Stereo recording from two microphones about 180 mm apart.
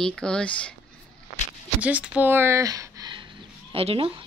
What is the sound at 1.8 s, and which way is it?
A woman's voice, 10° right (ahead or behind).